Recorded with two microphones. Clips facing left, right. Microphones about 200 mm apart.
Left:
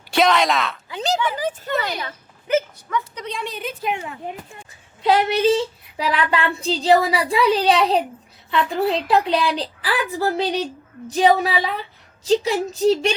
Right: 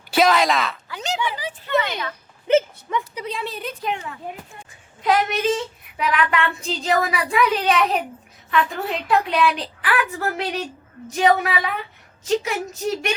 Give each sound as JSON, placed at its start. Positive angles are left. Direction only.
{"t": 0.1, "sound": "speech", "side_deg": 0}
{"t": 1.0, "sound": "child singing", "side_deg": 40}
{"t": 2.5, "sound": "speech", "side_deg": -25}
{"t": 3.2, "sound": "a woman's voice", "side_deg": -5}
{"t": 5.0, "sound": "child singing", "side_deg": 30}
{"t": 12.2, "sound": "a woman's voice", "side_deg": 30}